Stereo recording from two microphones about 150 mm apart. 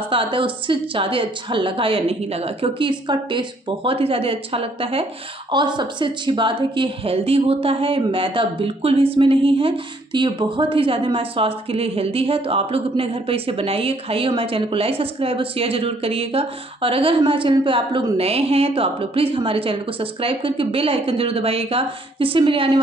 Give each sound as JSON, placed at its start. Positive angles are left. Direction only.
{"t": 0.1, "sound": "a woman's voice", "side_deg": -35}